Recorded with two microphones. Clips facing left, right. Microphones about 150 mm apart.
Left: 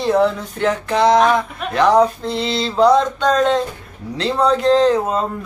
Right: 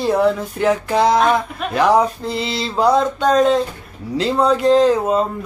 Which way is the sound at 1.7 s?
5° right (ahead or behind).